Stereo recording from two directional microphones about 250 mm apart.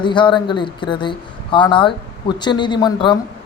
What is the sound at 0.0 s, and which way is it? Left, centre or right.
Speech, centre.